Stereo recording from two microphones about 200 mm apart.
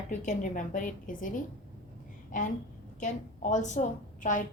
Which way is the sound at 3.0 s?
40° left (ahead or behind).